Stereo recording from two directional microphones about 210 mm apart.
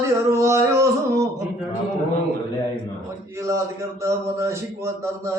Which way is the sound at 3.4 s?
15° right (ahead or behind).